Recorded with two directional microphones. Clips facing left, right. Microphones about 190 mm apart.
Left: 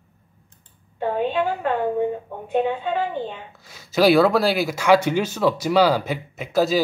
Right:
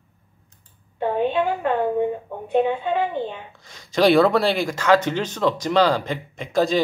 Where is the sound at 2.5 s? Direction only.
15° right (ahead or behind).